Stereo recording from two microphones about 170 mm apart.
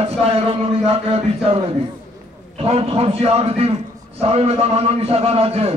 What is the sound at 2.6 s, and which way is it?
A man's voice, 35° right (ahead or behind).